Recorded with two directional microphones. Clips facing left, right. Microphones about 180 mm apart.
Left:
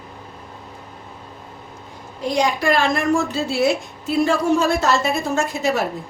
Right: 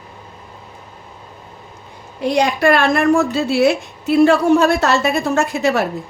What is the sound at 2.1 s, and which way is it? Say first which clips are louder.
A woman's voice: right 4 dB; 65° right (ahead or behind).